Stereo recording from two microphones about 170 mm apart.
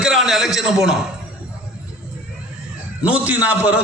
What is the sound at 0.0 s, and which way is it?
Speech, centre (ahead or behind).